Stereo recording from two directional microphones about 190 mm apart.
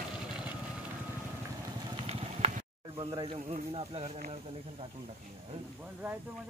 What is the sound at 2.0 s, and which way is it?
Snake, 35° right (ahead or behind).